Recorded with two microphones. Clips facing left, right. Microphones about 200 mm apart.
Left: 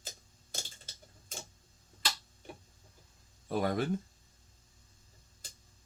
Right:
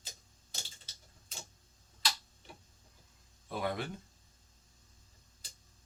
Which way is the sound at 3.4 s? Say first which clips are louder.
Left 5 dB; 45° left (ahead or behind).